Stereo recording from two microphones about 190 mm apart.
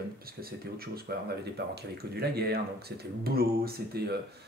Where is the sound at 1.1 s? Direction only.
55° right (ahead or behind).